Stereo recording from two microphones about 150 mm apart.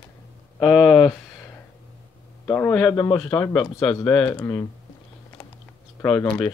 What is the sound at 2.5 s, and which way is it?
Speech, 20° left (ahead or behind).